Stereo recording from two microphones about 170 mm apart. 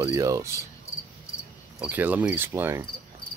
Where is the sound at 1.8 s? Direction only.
10° right (ahead or behind).